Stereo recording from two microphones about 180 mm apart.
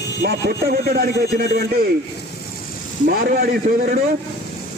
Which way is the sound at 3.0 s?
55° right (ahead or behind).